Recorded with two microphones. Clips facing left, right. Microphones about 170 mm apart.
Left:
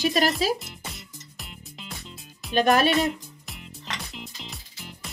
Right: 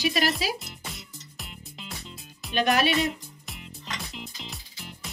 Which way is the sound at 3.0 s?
Centre (ahead or behind).